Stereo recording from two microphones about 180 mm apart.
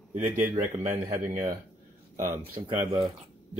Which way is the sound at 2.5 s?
25° right (ahead or behind).